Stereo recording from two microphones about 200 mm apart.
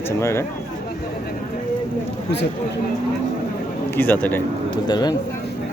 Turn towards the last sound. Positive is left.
turn(degrees=20)  # may be behind; listen again after turning